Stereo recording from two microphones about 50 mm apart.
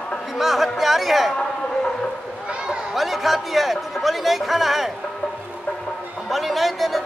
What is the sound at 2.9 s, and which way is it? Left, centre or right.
A man's voice, centre.